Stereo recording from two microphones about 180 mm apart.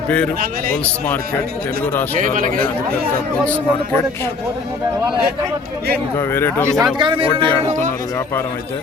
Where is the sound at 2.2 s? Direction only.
45° right (ahead or behind).